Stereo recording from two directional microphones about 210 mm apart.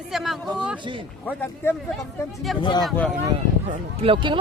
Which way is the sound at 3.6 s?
25° right (ahead or behind).